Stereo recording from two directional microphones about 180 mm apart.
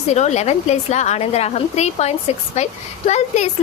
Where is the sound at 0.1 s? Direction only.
40° left (ahead or behind).